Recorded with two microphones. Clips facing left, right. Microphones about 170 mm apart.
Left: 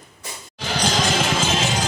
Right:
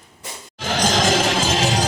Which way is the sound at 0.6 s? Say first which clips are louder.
Right 3 dB; 40° right (ahead or behind).